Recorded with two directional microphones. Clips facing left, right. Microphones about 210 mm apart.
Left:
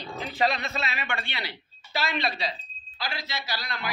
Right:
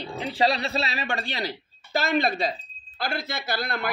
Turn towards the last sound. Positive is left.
turn(degrees=-55)  # may be behind; listen again after turning